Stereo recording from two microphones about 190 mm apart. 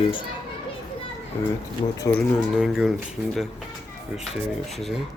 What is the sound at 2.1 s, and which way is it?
Speech, 15° left (ahead or behind).